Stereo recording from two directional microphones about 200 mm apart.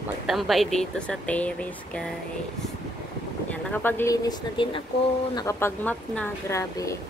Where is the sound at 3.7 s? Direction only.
10° left (ahead or behind).